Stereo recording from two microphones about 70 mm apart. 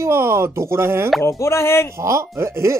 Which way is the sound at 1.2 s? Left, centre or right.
Left.